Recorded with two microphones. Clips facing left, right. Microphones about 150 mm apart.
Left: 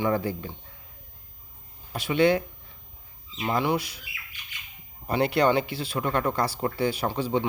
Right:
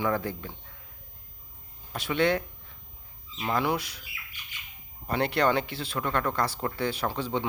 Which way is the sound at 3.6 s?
Centre (ahead or behind).